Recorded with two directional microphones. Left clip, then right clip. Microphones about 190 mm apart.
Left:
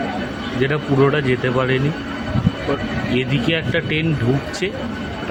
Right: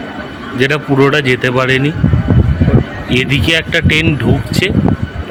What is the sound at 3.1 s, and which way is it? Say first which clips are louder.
Speech: right 9 dB; 50° right (ahead or behind).